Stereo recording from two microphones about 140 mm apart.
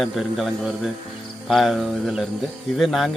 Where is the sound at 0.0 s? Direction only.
Centre (ahead or behind).